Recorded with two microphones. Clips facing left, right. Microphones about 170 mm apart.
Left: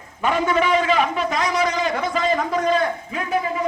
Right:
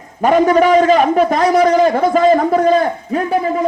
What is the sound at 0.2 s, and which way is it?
A man's voice, 45° right (ahead or behind).